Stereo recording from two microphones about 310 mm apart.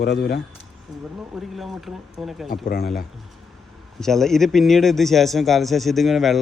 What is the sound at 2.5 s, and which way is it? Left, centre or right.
Speech, left.